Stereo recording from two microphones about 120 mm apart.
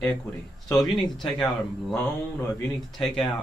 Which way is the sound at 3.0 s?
Centre (ahead or behind).